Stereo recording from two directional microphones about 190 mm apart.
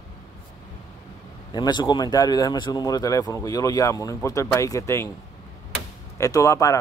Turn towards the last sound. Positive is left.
turn(degrees=15)  # may be behind; listen again after turning